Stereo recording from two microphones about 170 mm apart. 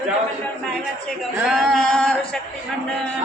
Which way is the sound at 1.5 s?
5° left (ahead or behind).